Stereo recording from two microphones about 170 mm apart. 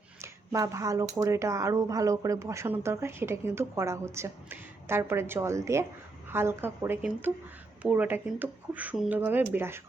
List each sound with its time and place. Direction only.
0.2 s speech: 20° right (ahead or behind)